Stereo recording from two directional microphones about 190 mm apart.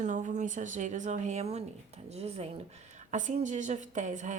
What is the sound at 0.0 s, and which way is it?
A woman's voice, 40° right (ahead or behind).